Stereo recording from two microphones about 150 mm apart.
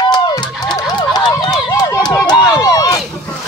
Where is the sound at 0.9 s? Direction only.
25° left (ahead or behind).